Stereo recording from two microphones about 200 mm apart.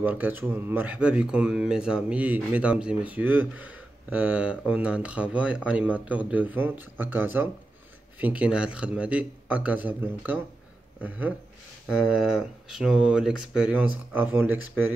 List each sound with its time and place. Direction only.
0.0 s speech: 10° right (ahead or behind)